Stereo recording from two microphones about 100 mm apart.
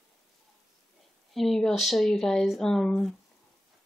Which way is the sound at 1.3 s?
Centre (ahead or behind).